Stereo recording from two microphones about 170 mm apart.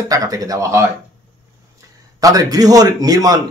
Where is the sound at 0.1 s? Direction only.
20° right (ahead or behind).